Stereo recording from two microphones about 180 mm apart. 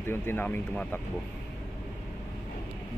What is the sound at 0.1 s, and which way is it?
Speech, 10° left (ahead or behind).